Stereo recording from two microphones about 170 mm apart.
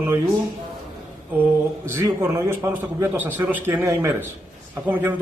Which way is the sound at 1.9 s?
15° right (ahead or behind).